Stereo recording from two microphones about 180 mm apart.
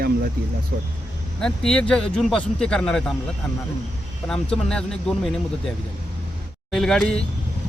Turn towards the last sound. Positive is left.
turn(degrees=5)  # may be behind; listen again after turning